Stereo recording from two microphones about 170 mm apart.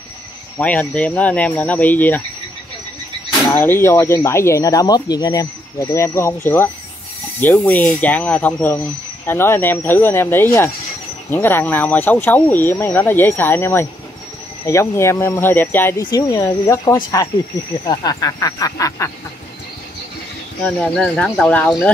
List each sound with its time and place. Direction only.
0.6 s speech: 10° left (ahead or behind)
3.5 s speech: 15° left (ahead or behind)
16.0 s speech: 25° left (ahead or behind)
20.6 s speech: 5° left (ahead or behind)